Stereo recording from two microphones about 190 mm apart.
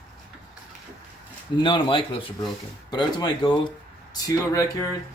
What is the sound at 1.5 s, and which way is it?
Speech, 25° left (ahead or behind).